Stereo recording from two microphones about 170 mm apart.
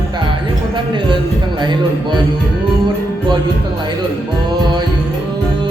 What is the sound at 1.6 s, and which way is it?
Speech, 25° right (ahead or behind).